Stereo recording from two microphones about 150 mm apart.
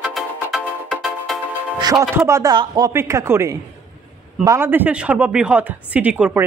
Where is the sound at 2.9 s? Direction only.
20° right (ahead or behind).